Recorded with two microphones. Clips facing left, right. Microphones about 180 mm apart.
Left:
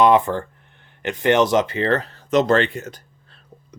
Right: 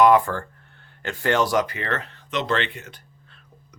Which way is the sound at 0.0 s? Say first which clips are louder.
Left 1 dB; 20° left (ahead or behind).